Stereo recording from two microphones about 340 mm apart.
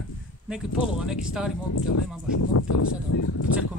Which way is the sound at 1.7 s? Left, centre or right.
Left.